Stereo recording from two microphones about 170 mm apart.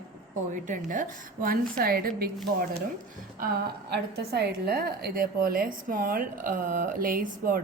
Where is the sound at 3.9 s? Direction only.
70° right (ahead or behind).